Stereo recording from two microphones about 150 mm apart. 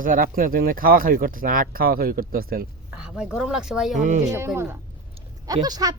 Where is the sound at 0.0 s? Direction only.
65° right (ahead or behind).